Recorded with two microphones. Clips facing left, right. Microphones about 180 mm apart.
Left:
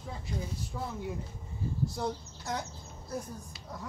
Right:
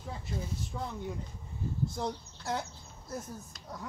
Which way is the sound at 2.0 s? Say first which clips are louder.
Left 1 dB; centre (ahead or behind).